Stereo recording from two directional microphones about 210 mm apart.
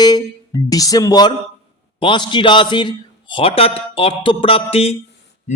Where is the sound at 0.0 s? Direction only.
20° left (ahead or behind).